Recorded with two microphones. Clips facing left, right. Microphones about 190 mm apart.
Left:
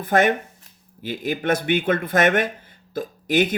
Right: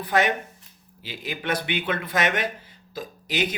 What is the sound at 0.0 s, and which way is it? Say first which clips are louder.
Speech: left 4 dB; 50° left (ahead or behind).